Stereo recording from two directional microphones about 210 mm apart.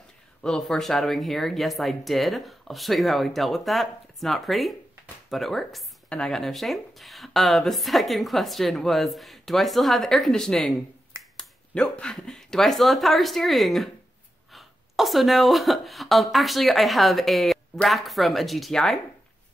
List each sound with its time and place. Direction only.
0.4 s speech: centre (ahead or behind)